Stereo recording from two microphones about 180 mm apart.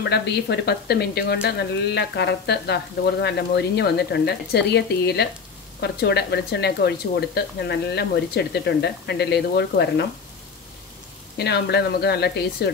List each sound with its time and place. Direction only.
0.1 s speech: 65° left (ahead or behind)
11.3 s speech: 65° left (ahead or behind)